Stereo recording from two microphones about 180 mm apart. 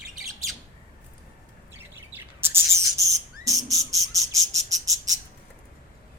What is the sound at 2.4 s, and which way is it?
Insect, 15° right (ahead or behind).